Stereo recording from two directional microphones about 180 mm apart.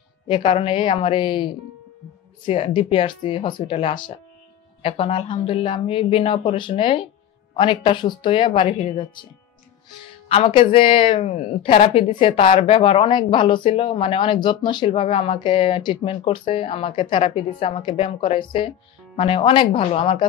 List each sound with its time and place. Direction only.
0.3 s speech: 30° left (ahead or behind)
10.2 s speech: 35° left (ahead or behind)